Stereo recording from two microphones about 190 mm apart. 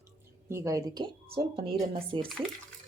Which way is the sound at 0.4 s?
15° right (ahead or behind).